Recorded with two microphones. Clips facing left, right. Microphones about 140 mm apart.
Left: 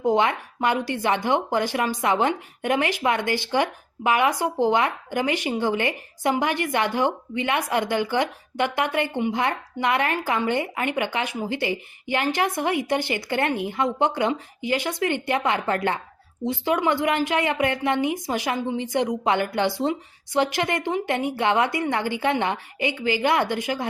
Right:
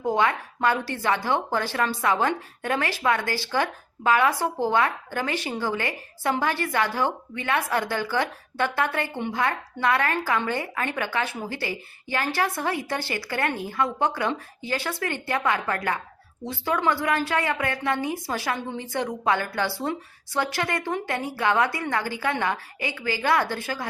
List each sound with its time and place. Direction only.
0.0 s speech: 20° left (ahead or behind)